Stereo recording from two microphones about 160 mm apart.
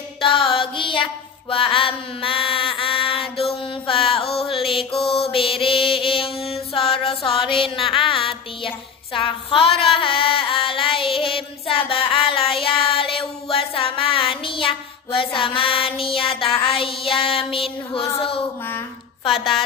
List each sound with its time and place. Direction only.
0.2 s music: 35° left (ahead or behind)
1.5 s mantra: 35° left (ahead or behind)
16.6 s child singing: 35° left (ahead or behind)